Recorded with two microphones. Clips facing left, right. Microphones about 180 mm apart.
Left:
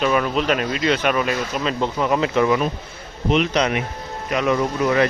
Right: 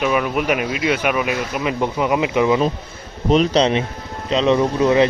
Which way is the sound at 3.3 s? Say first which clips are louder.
Right 4 dB; 35° right (ahead or behind).